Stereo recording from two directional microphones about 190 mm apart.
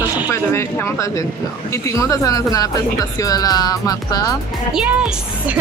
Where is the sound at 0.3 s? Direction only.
15° left (ahead or behind).